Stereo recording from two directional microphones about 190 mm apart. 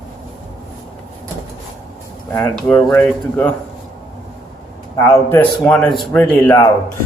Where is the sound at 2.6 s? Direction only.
5° left (ahead or behind).